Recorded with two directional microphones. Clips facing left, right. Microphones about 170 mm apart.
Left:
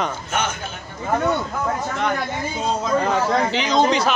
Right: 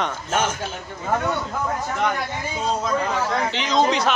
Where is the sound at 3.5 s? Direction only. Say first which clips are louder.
Left 2 dB; centre (ahead or behind).